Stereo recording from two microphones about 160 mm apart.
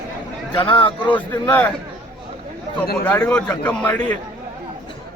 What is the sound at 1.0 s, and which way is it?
Speech, 10° left (ahead or behind).